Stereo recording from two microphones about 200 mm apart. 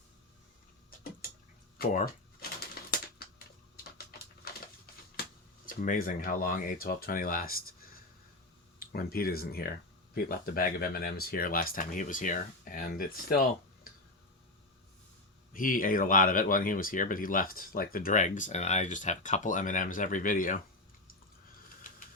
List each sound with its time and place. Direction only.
1.8 s a sound: 45° left (ahead or behind)
4.1 s bird: 50° left (ahead or behind)
5.6 s speech: 45° left (ahead or behind)
15.5 s speech: 45° left (ahead or behind)